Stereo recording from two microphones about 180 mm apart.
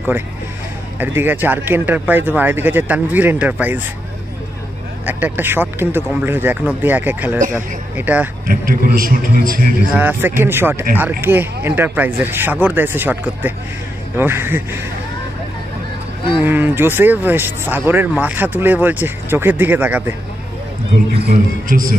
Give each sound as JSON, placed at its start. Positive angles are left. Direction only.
{"t": 0.9, "sound": "speech", "side_deg": -10}
{"t": 5.0, "sound": "speech", "side_deg": -10}
{"t": 8.5, "sound": "a man's voice", "side_deg": -50}
{"t": 9.9, "sound": "speech", "side_deg": -10}
{"t": 16.3, "sound": "speech", "side_deg": -10}
{"t": 21.2, "sound": "a man's voice", "side_deg": -50}